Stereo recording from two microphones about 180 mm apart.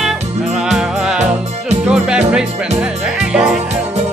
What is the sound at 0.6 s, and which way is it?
Music, 5° right (ahead or behind).